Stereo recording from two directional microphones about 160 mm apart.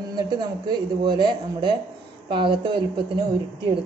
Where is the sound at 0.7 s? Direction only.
30° right (ahead or behind).